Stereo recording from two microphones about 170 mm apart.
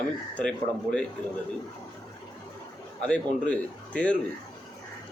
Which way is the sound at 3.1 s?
5° left (ahead or behind).